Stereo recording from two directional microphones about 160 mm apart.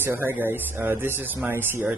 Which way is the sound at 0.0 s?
10° right (ahead or behind).